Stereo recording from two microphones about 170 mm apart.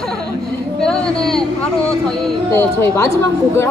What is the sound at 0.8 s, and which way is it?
Speech, 5° left (ahead or behind).